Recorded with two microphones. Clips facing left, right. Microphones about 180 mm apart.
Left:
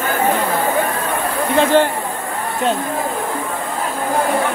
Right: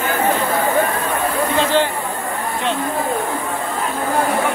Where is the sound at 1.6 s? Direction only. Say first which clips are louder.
Left 5 dB; 50° left (ahead or behind).